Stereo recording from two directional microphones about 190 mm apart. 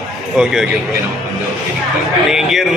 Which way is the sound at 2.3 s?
Centre (ahead or behind).